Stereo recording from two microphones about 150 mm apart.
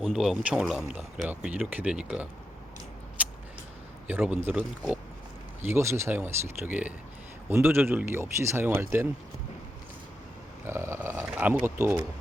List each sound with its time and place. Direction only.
0.0 s speech: centre (ahead or behind)
3.2 s a sound: 10° right (ahead or behind)
4.0 s speech: 10° right (ahead or behind)
10.7 s speech: 15° right (ahead or behind)